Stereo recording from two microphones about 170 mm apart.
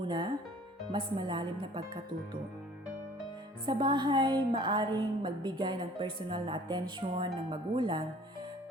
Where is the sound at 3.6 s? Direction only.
30° right (ahead or behind).